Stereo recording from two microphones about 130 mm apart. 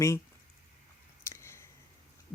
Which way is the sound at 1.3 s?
20° left (ahead or behind).